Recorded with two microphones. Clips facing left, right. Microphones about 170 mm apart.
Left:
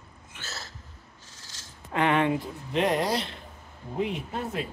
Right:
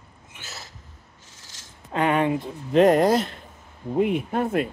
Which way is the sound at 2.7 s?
45° right (ahead or behind).